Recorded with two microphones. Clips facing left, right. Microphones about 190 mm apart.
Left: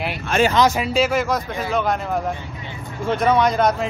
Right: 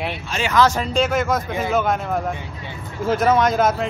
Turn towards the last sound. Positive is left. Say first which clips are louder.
# even
turn(degrees=0)  # may be behind; listen again after turning